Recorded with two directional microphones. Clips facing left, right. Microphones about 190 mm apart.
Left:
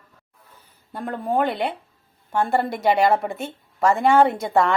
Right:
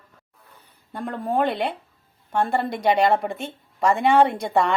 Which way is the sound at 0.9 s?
Centre (ahead or behind).